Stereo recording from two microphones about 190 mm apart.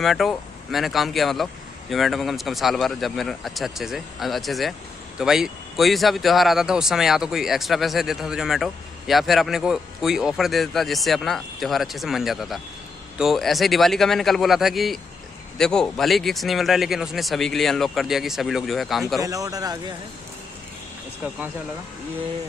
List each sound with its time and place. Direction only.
0.0 s speech: centre (ahead or behind)
19.2 s speech: 15° right (ahead or behind)